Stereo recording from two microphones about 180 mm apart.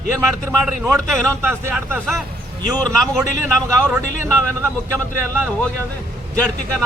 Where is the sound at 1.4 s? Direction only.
10° right (ahead or behind).